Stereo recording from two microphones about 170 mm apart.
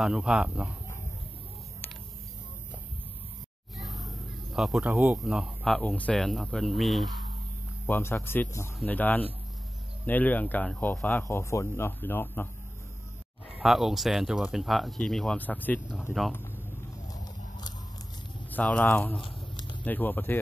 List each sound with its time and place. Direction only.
0.0 s speech: 5° right (ahead or behind)
3.8 s music: centre (ahead or behind)
4.6 s speech: 5° right (ahead or behind)
7.8 s speech: 15° left (ahead or behind)
13.6 s speech: centre (ahead or behind)
17.1 s a sound: 25° left (ahead or behind)
18.5 s speech: 10° left (ahead or behind)
19.2 s a sound: 25° left (ahead or behind)
19.8 s speech: 10° left (ahead or behind)